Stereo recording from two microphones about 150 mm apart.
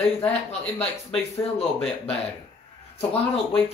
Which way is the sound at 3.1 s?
40° left (ahead or behind).